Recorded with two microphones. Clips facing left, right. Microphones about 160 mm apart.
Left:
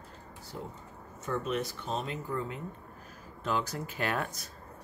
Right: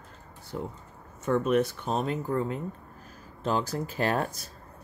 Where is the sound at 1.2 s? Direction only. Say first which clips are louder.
Right 8 dB; 60° right (ahead or behind); by 4.5 s 35° right (ahead or behind).